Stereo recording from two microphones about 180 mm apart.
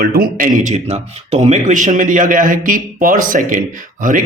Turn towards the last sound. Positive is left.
turn(degrees=-50)  # may be behind; listen again after turning